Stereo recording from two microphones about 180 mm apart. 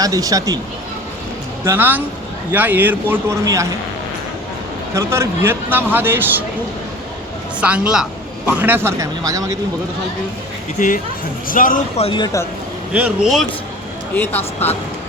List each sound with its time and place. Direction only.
0.0 s speech: 20° right (ahead or behind)
1.6 s speech: 10° right (ahead or behind)
4.9 s speech: 15° right (ahead or behind)
7.6 s speech: 5° right (ahead or behind)
10.8 s speech: 45° left (ahead or behind)
12.0 s speech: 25° left (ahead or behind)
12.9 s speech: 5° right (ahead or behind)
14.2 s speech: 10° left (ahead or behind)